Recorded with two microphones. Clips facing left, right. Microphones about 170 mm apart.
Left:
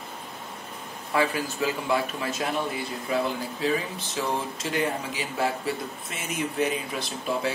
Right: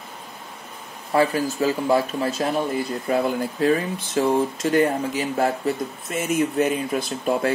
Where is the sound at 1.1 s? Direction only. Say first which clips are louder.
Right 6 dB; 40° right (ahead or behind).